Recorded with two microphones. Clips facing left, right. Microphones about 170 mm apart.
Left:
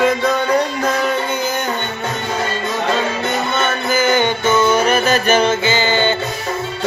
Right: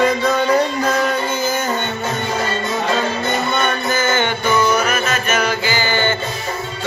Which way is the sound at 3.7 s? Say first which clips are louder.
Left 2 dB; 10° left (ahead or behind).